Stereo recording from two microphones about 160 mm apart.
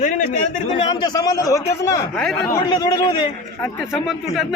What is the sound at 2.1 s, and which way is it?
Speech, 5° left (ahead or behind).